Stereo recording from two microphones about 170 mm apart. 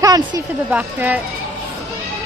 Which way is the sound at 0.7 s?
10° right (ahead or behind).